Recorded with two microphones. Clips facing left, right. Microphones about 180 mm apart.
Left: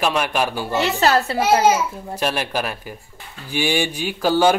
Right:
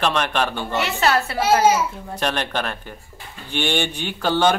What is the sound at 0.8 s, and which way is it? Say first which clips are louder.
Speech: left 3 dB; 35° left (ahead or behind).